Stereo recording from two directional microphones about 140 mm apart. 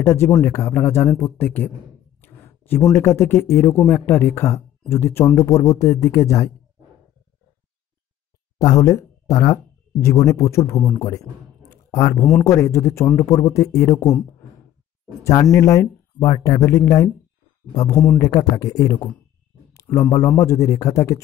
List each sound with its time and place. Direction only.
0.0 s a man's voice: 20° left (ahead or behind)
2.2 s a sound: 15° left (ahead or behind)
2.9 s speech: 20° left (ahead or behind)
8.5 s speech: 25° left (ahead or behind)
11.7 s a sound: 20° left (ahead or behind)
12.4 s speech: 20° left (ahead or behind)
15.5 s speech: 20° left (ahead or behind)